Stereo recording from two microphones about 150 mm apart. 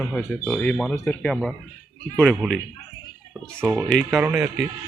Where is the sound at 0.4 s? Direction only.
10° left (ahead or behind).